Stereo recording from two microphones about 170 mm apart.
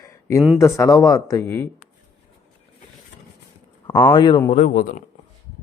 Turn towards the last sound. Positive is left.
turn(degrees=50)  # may be behind; listen again after turning